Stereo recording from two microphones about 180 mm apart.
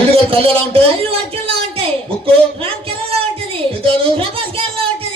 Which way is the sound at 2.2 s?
30° right (ahead or behind).